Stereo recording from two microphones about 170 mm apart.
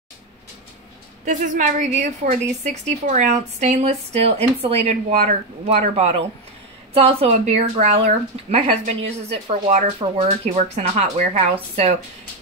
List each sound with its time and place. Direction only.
1.2 s a woman's voice: 50° right (ahead or behind)